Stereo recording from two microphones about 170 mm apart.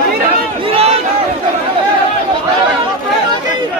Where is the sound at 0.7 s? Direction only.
35° right (ahead or behind).